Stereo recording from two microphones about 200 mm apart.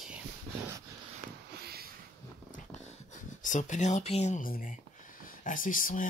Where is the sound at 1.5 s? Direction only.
50° right (ahead or behind).